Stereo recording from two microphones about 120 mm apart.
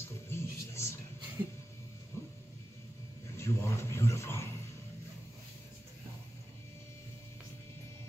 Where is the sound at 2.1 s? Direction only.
20° left (ahead or behind).